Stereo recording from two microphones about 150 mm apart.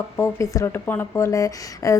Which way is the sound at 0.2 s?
20° left (ahead or behind).